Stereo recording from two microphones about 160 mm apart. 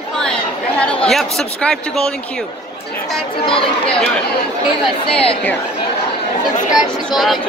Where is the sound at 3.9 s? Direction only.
5° left (ahead or behind).